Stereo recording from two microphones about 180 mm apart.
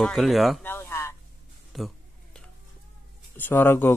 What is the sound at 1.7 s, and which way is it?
Speech, centre (ahead or behind).